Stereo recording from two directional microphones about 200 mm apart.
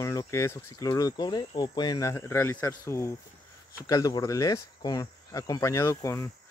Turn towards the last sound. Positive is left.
turn(degrees=15)  # may be behind; listen again after turning